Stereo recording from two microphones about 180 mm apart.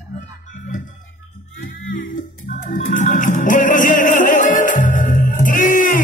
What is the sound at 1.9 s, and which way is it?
Music, 45° left (ahead or behind).